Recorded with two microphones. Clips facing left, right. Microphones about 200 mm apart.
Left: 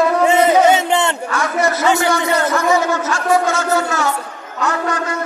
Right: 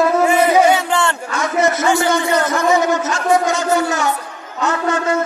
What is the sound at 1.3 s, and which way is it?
Speech, 20° right (ahead or behind).